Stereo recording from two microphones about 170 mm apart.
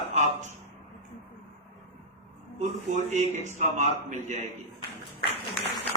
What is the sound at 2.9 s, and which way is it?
Speech, 45° right (ahead or behind).